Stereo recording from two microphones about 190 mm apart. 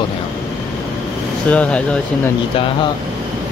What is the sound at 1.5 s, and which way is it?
Speech, 5° left (ahead or behind).